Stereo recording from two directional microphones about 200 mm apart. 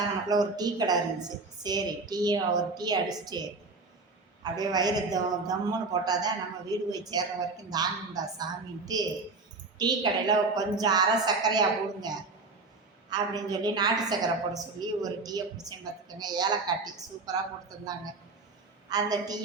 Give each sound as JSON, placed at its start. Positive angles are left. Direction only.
{"t": 0.0, "sound": "a man's voice", "side_deg": -20}
{"t": 4.4, "sound": "a man's voice", "side_deg": -20}
{"t": 18.9, "sound": "a man's voice", "side_deg": -20}